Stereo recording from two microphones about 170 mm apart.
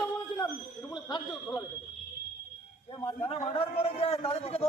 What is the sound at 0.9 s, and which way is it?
Speech, 25° left (ahead or behind).